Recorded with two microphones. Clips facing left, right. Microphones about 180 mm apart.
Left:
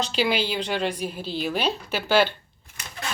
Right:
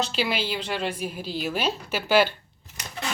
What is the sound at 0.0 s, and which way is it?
A woman's voice, centre (ahead or behind).